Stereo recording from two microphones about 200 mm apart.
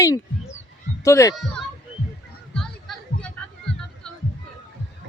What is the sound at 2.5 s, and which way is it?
Children playing, 5° left (ahead or behind).